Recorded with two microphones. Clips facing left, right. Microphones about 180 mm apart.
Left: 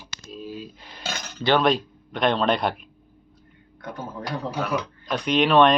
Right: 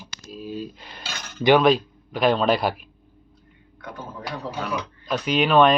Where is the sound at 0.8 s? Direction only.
80° right.